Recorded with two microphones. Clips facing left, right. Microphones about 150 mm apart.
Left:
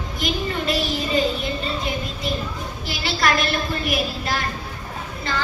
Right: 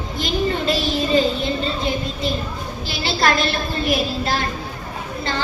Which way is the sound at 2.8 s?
30° right (ahead or behind).